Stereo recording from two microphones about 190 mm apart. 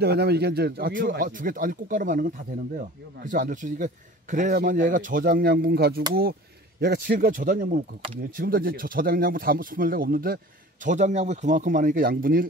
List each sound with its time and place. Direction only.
0.0 s speech: 60° right (ahead or behind)